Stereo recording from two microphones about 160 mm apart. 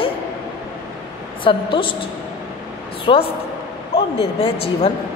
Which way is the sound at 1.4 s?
30° left (ahead or behind).